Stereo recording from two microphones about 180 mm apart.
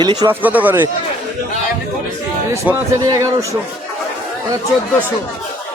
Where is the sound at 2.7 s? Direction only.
10° right (ahead or behind).